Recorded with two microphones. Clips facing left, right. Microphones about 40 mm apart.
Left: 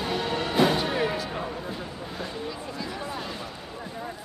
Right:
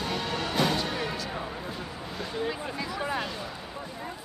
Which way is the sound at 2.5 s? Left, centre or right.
Right.